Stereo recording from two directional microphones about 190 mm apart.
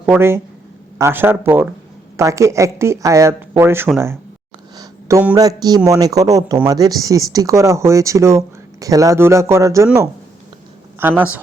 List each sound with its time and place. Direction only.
0.1 s speech: 15° right (ahead or behind)
4.8 s a sound: 20° right (ahead or behind)
5.3 s speech: 20° right (ahead or behind)